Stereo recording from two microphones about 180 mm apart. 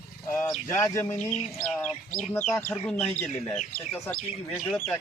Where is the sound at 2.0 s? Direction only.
45° left (ahead or behind).